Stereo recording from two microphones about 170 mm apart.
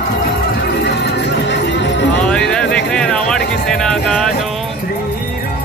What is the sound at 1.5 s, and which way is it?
Music, 90° left.